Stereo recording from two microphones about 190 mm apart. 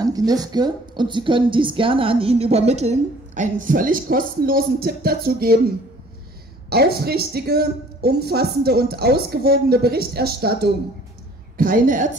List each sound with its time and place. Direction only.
0.0 s a woman's voice: 20° right (ahead or behind); by 5.6 s 55° right (ahead or behind)
6.7 s a woman's voice: 55° right (ahead or behind)